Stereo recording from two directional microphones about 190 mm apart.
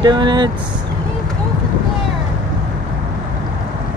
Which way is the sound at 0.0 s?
25° right (ahead or behind).